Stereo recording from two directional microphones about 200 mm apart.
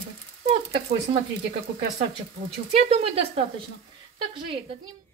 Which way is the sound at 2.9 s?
30° right (ahead or behind).